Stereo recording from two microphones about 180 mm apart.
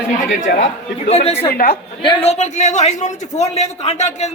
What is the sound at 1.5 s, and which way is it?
Speech, 55° left (ahead or behind).